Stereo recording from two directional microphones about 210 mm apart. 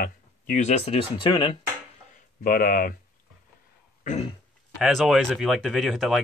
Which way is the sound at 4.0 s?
35° left (ahead or behind).